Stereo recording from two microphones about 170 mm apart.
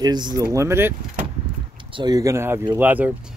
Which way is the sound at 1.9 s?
25° right (ahead or behind).